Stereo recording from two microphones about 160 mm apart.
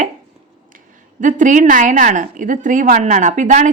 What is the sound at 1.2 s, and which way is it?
A woman's voice, 55° right (ahead or behind).